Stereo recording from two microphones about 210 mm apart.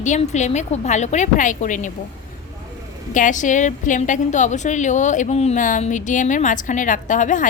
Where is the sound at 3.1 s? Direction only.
35° left (ahead or behind).